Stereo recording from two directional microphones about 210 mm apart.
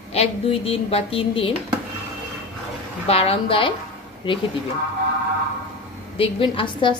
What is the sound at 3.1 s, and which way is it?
A woman's voice, 30° left (ahead or behind).